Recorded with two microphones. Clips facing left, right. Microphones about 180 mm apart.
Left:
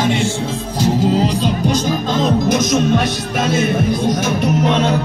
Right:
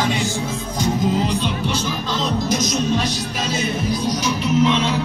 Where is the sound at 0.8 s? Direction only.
35° left (ahead or behind).